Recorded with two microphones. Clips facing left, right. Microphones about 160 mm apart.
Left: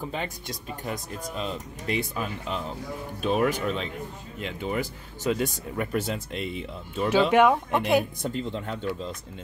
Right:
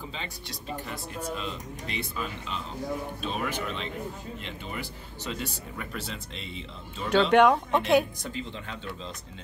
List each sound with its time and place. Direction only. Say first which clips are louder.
0.1 s speech: left 6 dB; 50° left (ahead or behind)
7.1 s speech: even; 5° left (ahead or behind)
8.2 s speech: left 6 dB; 55° left (ahead or behind)